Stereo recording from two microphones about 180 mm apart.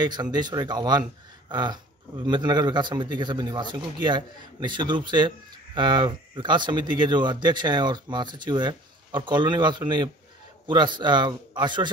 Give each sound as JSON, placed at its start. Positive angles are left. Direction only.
{"t": 0.0, "sound": "speech", "side_deg": -25}